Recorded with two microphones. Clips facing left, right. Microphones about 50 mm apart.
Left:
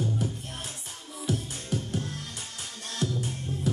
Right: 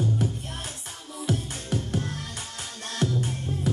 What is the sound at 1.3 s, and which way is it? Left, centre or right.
Music, right.